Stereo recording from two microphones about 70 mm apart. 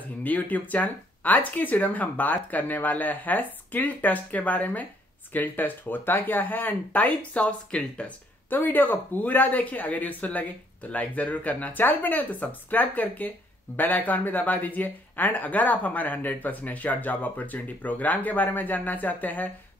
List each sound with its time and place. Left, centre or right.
0.2 s speech: left